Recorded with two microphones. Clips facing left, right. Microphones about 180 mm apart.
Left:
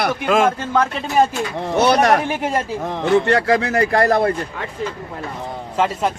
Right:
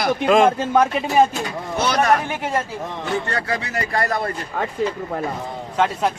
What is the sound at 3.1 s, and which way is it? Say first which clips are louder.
Speech: left 10 dB; 90° left.